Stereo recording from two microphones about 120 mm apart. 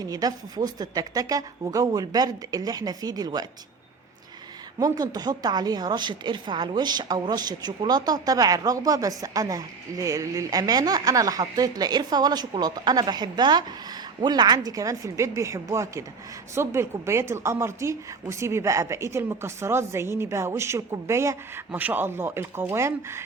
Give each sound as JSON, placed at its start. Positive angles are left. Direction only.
{"t": 0.0, "sound": "a woman's voice", "side_deg": -30}
{"t": 4.8, "sound": "a woman's voice", "side_deg": -35}